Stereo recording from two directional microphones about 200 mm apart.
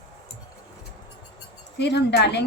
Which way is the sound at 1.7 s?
60° left (ahead or behind).